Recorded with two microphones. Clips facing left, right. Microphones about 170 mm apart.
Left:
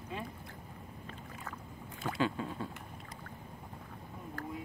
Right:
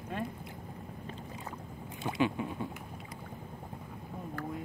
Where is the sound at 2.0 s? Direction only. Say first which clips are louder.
Right 3 dB; 20° right (ahead or behind).